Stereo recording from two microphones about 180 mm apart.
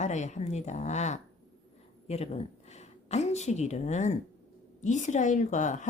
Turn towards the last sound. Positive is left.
turn(degrees=45)  # may be behind; listen again after turning